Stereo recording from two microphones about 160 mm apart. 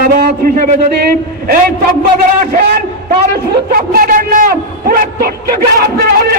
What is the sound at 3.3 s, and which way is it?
A man's voice, 65° right (ahead or behind).